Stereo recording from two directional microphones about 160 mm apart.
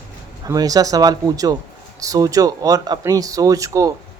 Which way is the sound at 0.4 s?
20° right (ahead or behind).